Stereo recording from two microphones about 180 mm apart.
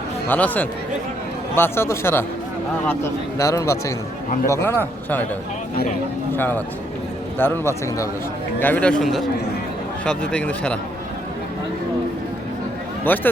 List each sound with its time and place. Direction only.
0.3 s speech: 10° left (ahead or behind)
6.3 s a man's voice: 10° left (ahead or behind)
13.1 s speech: 10° left (ahead or behind)